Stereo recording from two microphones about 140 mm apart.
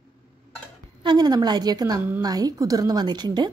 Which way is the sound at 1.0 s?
30° right (ahead or behind).